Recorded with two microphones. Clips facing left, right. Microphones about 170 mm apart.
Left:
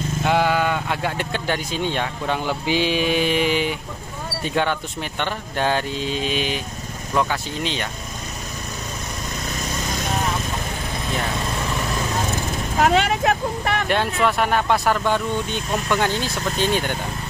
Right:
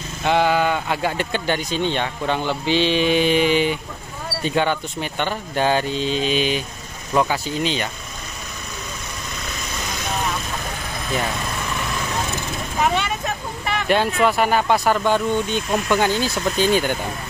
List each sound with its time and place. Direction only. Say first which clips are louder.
0.2 s speech: right 2 dB; centre (ahead or behind)
12.8 s vehicle: left 4 dB; 80° left
13.8 s speech: right 5 dB; 5° right (ahead or behind)